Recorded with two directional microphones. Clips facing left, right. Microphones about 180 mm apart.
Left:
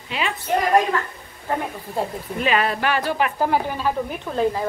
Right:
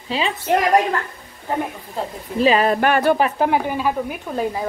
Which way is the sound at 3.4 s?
10° right (ahead or behind).